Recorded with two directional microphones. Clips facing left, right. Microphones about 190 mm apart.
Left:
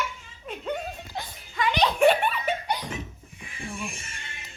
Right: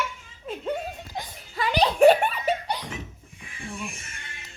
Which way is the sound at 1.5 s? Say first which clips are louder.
Right 1 dB; 35° right (ahead or behind).